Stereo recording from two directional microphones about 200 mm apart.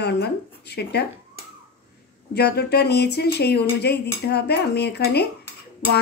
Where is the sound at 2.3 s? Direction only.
55° left (ahead or behind).